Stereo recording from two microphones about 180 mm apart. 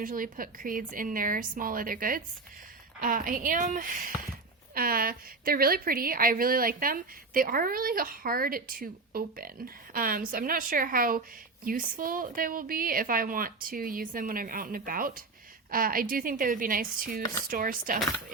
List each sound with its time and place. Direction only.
0.0 s a woman's voice: 50° right (ahead or behind)